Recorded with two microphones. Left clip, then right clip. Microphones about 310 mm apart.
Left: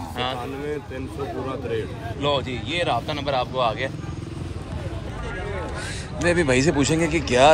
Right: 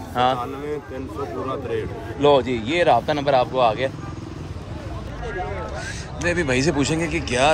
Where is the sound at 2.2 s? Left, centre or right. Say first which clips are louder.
Right 7 dB; centre.